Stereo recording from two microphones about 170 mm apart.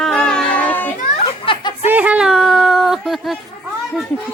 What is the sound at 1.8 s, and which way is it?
A woman's voice, 10° right (ahead or behind).